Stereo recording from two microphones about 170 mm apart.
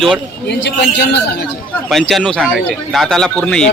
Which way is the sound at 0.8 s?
70° left (ahead or behind).